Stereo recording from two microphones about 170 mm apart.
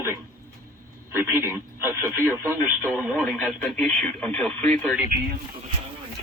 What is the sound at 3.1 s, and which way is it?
Speech, centre (ahead or behind).